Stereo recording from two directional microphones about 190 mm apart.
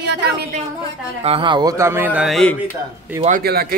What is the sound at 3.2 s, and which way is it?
Speech, 50° right (ahead or behind).